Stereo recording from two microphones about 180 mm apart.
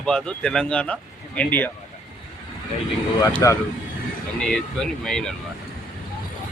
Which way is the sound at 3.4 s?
20° left (ahead or behind).